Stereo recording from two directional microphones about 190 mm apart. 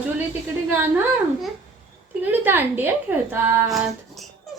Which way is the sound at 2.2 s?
10° right (ahead or behind).